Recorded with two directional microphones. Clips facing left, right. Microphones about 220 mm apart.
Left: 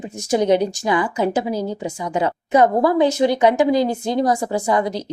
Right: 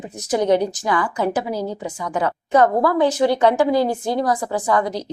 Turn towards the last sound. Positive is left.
turn(degrees=25)  # may be behind; listen again after turning